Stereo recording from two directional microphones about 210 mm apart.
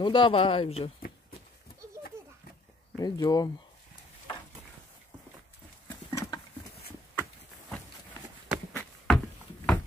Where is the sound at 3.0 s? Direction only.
20° left (ahead or behind).